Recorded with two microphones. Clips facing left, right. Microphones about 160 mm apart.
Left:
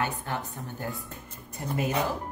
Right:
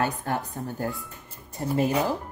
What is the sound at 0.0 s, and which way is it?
Speech, 40° right (ahead or behind).